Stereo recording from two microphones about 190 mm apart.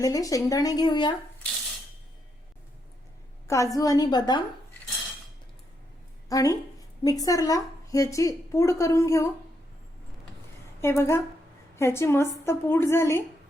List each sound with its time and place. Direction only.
0.0 s speech: 20° left (ahead or behind)
3.4 s speech: 15° left (ahead or behind)
6.2 s a woman's voice: 20° left (ahead or behind)
10.8 s a woman's voice: 15° left (ahead or behind)